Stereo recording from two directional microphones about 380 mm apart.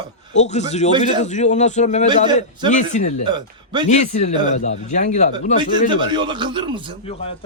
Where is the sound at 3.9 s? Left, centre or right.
Centre.